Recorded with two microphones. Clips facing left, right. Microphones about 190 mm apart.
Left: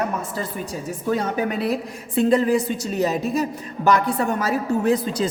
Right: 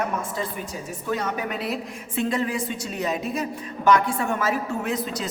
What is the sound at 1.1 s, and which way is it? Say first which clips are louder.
A woman's voice: left 4 dB; 35° left (ahead or behind).